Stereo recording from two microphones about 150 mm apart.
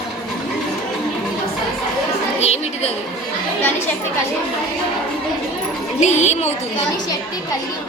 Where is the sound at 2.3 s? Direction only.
45° left (ahead or behind).